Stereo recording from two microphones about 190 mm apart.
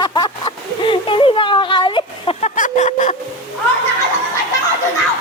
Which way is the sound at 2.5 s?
40° left (ahead or behind).